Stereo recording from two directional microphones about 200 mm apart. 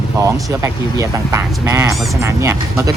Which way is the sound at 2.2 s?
15° right (ahead or behind).